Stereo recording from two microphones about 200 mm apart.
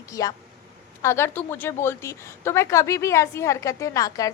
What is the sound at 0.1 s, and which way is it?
A woman's voice, 15° left (ahead or behind).